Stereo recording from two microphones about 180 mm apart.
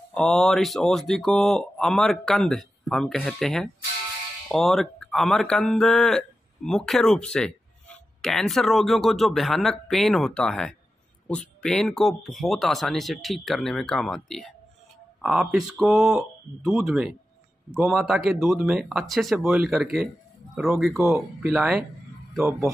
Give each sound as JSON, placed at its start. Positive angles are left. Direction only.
{"t": 0.1, "sound": "speech", "side_deg": 5}